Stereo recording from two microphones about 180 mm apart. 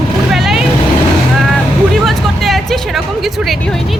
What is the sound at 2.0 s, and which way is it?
Hubbub, centre (ahead or behind).